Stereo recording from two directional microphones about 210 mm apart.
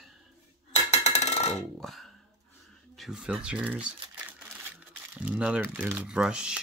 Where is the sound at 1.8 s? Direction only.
Centre (ahead or behind).